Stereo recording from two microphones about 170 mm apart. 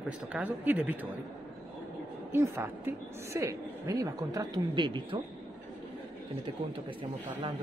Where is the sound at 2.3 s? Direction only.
15° right (ahead or behind).